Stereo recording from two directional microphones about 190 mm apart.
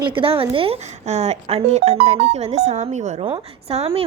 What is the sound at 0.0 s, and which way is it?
A woman's voice, 25° right (ahead or behind).